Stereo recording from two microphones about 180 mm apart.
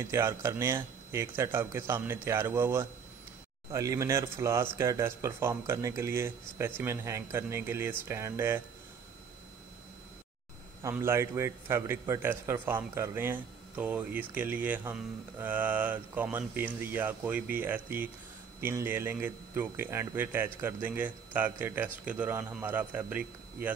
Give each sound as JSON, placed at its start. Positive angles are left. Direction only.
{"t": 0.1, "sound": "a man's voice", "side_deg": -15}
{"t": 10.8, "sound": "a man's voice", "side_deg": -15}